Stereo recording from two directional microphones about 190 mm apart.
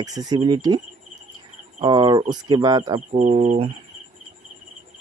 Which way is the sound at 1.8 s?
25° right (ahead or behind).